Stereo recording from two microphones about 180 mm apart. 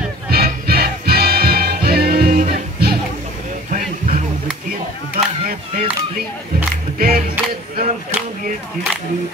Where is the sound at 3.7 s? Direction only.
45° right (ahead or behind).